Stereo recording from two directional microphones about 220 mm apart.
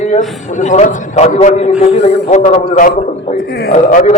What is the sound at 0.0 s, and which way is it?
A man's voice, 35° left (ahead or behind).